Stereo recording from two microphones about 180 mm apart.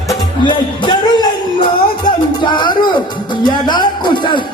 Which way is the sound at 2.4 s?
25° left (ahead or behind).